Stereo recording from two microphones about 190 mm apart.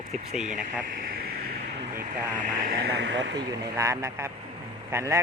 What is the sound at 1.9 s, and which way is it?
Speech, 50° right (ahead or behind).